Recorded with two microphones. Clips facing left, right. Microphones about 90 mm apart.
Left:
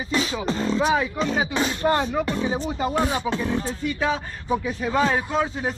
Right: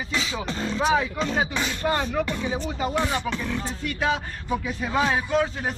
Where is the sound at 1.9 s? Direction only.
15° left (ahead or behind).